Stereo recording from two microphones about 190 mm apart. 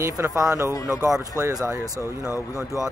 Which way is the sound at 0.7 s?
15° left (ahead or behind).